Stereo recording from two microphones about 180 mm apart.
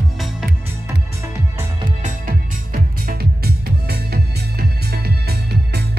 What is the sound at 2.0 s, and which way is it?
Music, 50° right (ahead or behind).